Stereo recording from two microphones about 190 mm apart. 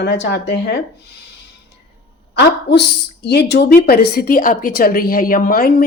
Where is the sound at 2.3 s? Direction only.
60° left (ahead or behind).